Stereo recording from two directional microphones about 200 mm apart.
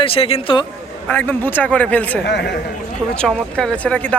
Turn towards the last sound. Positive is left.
turn(degrees=5)  # may be behind; listen again after turning